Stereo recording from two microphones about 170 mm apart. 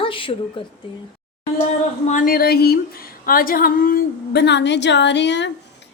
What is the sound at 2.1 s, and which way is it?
A woman's voice, 55° left (ahead or behind).